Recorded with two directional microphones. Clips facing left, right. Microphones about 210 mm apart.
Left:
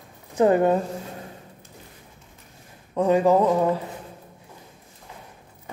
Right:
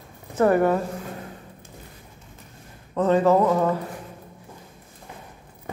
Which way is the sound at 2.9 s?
10° left (ahead or behind).